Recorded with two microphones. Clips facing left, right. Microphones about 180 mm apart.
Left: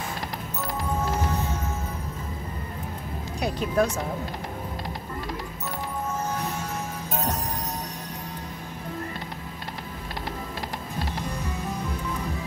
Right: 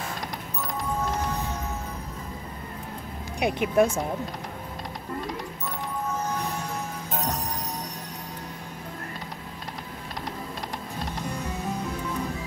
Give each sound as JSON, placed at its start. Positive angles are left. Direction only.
{"t": 0.6, "sound": "music", "side_deg": 0}
{"t": 3.3, "sound": "speech", "side_deg": -20}